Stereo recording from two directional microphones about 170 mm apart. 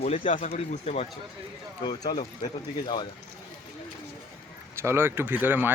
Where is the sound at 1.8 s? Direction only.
25° left (ahead or behind).